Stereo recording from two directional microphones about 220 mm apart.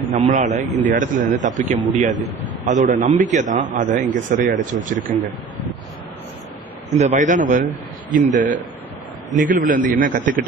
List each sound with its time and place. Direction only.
0.1 s a man's voice: 30° right (ahead or behind)
7.0 s a man's voice: 30° right (ahead or behind)